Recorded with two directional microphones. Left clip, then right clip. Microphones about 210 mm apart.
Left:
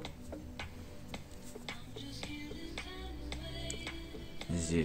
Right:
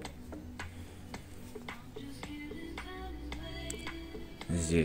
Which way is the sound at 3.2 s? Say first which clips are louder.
Left 2 dB; 10° right (ahead or behind).